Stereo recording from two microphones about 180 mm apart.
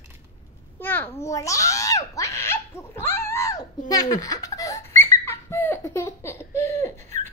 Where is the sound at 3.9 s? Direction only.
20° left (ahead or behind).